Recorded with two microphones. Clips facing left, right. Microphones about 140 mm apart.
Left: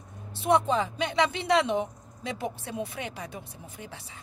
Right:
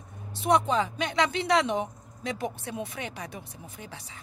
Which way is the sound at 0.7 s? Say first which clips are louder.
Even; 25° left (ahead or behind).